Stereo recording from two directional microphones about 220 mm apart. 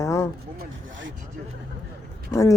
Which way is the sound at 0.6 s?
60° right (ahead or behind).